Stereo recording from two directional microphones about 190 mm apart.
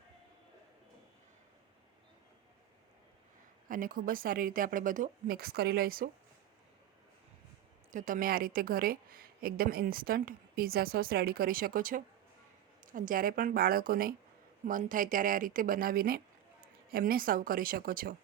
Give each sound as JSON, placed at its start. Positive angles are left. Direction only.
{"t": 3.7, "sound": "speech", "side_deg": -45}
{"t": 7.9, "sound": "speech", "side_deg": -45}